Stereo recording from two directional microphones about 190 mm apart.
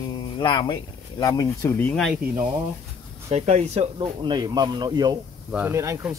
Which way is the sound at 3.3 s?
35° right (ahead or behind).